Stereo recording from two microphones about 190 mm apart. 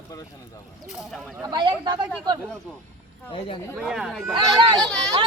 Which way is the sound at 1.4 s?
25° right (ahead or behind).